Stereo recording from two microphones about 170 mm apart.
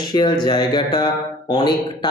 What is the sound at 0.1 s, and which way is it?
Speech, 25° left (ahead or behind).